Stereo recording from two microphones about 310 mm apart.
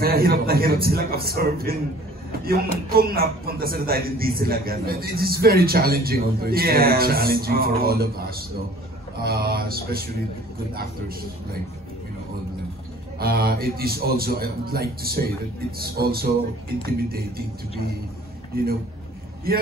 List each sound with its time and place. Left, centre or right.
0.0 s speech: right
13.2 s speech: right
19.5 s speech: right